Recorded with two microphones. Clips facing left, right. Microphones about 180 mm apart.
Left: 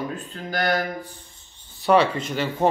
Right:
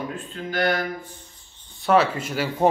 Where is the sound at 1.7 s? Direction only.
Centre (ahead or behind).